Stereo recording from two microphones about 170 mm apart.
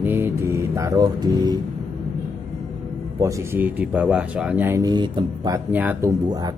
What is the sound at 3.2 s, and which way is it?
Speech, 15° right (ahead or behind).